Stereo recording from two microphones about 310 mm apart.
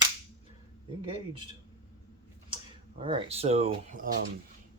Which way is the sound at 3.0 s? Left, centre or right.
Centre.